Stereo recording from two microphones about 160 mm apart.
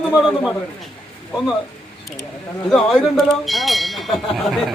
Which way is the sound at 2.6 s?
Centre (ahead or behind).